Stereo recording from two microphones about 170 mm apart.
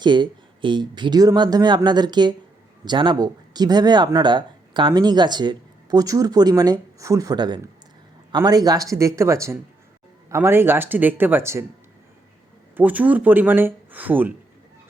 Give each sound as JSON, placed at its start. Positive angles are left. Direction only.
{"t": 0.0, "sound": "speech", "side_deg": -25}
{"t": 12.7, "sound": "speech", "side_deg": -10}